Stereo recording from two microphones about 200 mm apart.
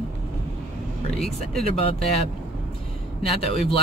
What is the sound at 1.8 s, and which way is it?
Speech, 30° left (ahead or behind).